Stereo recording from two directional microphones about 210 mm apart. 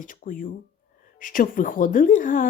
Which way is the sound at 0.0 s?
40° left (ahead or behind).